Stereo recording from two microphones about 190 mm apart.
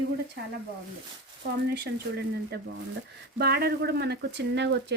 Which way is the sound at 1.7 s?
60° right (ahead or behind).